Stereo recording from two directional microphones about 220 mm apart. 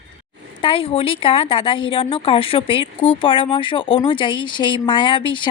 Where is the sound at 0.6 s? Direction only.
25° left (ahead or behind).